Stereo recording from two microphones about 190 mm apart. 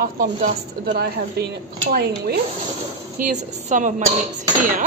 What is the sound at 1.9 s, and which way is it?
Dishes, 55° right (ahead or behind).